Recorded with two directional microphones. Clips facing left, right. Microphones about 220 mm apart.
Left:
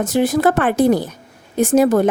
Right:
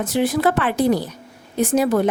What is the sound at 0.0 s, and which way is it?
A woman's voice, 45° left (ahead or behind).